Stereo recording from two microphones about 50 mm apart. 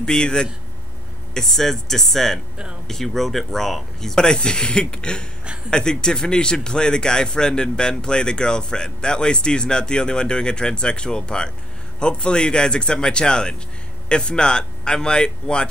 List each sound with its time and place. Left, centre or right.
0.0 s a man's voice: centre